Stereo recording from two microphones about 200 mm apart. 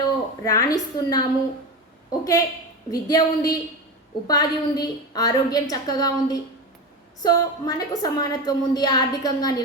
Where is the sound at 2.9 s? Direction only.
20° left (ahead or behind).